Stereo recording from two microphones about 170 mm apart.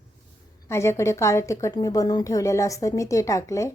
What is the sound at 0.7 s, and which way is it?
A woman's voice, 15° left (ahead or behind).